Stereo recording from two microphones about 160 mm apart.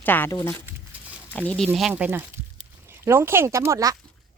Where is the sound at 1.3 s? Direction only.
10° left (ahead or behind).